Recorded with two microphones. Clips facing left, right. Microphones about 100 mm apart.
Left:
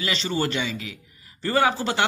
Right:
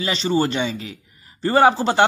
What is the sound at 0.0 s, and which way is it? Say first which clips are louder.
Speech: right 5 dB; 25° right (ahead or behind).